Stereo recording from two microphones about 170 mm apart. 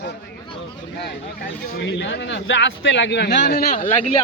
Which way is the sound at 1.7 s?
90° left.